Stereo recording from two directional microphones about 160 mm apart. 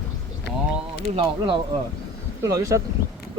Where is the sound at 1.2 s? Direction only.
30° right (ahead or behind).